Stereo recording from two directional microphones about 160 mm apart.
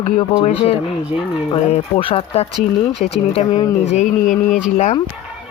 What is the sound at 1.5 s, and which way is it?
Speech, 35° left (ahead or behind).